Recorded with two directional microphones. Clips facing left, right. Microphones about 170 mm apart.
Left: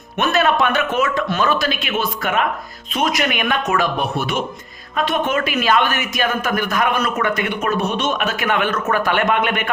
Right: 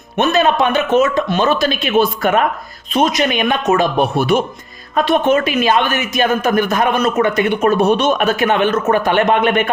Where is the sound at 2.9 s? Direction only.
25° right (ahead or behind).